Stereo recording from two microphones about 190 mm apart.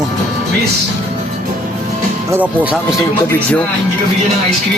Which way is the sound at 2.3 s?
10° right (ahead or behind).